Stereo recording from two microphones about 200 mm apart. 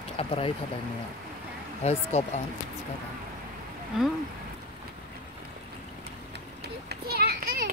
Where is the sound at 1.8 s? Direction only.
35° left (ahead or behind).